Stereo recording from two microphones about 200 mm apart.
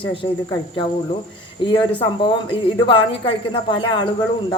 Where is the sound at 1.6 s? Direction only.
25° left (ahead or behind).